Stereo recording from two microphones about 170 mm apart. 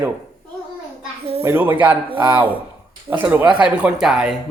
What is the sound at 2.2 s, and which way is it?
Speech, 30° right (ahead or behind).